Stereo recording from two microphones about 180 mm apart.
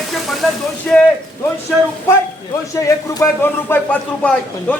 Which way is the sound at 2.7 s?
20° left (ahead or behind).